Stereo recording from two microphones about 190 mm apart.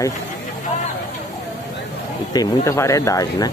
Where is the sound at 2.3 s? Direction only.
15° left (ahead or behind).